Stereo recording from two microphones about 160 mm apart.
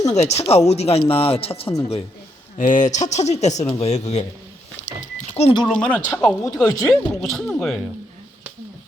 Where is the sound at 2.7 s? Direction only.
50° left (ahead or behind).